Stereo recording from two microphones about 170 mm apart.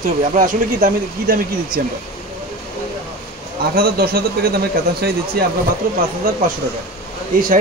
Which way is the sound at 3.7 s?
65° right (ahead or behind).